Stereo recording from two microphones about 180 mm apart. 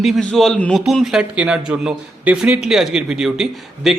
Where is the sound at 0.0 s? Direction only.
Centre (ahead or behind).